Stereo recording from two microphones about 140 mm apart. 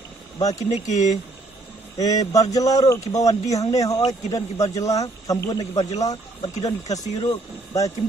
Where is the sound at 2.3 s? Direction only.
25° left (ahead or behind).